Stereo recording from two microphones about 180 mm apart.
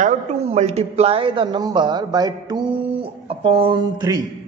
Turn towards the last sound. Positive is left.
turn(degrees=-25)  # may be behind; listen again after turning